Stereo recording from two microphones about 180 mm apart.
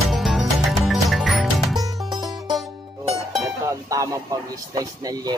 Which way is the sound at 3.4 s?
15° right (ahead or behind).